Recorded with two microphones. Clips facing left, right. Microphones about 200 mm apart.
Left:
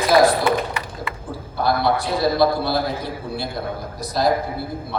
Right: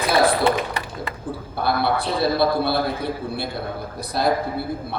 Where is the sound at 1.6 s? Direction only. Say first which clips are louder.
Left 2 dB; 60° right (ahead or behind).